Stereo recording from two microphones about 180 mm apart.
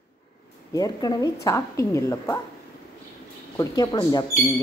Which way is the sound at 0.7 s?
20° left (ahead or behind).